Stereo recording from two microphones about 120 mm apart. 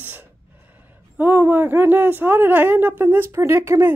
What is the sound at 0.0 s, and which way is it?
Gasp, 15° right (ahead or behind).